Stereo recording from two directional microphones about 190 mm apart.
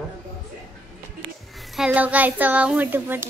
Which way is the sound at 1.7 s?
5° right (ahead or behind).